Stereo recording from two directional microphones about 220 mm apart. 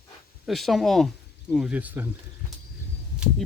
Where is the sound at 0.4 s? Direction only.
Centre (ahead or behind).